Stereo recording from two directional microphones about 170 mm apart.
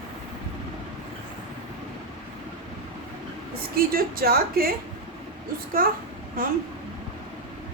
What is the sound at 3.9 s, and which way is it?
Speech, 60° right (ahead or behind).